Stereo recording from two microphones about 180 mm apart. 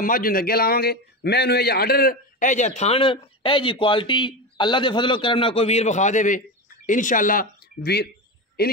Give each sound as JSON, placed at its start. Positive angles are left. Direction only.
{"t": 0.0, "sound": "a man's voice", "side_deg": 55}